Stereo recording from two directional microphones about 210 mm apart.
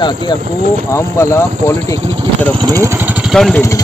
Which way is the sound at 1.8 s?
25° right (ahead or behind).